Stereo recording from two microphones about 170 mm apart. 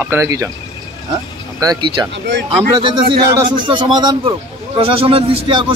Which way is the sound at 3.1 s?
30° right (ahead or behind).